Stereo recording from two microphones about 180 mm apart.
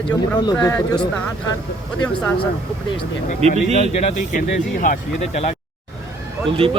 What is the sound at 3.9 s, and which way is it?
Speech, 35° left (ahead or behind).